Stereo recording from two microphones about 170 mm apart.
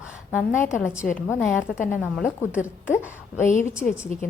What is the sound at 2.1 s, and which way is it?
Speech, 5° right (ahead or behind).